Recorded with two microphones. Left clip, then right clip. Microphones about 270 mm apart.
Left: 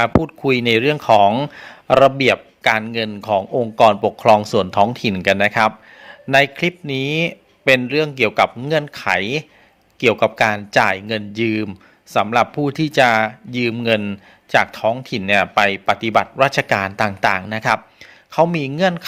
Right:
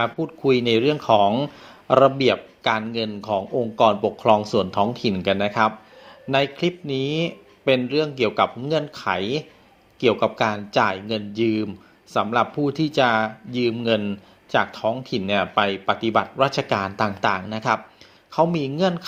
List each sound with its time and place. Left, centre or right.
0.0 s speech: left